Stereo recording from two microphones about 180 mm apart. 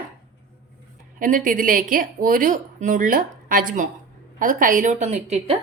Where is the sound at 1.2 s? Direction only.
50° right (ahead or behind).